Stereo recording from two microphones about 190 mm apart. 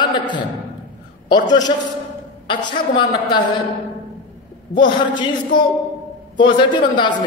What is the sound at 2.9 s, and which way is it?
Speech, 25° left (ahead or behind).